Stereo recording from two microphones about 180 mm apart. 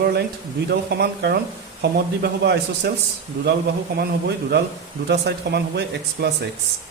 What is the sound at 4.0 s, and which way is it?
Speech, 65° right (ahead or behind).